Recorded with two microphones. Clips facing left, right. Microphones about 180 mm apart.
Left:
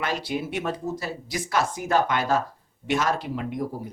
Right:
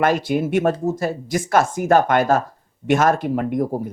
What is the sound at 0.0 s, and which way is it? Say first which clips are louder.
Speech: right 9 dB; 50° right (ahead or behind).